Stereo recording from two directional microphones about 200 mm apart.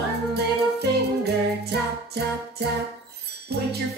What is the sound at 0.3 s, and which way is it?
Music, 55° right (ahead or behind).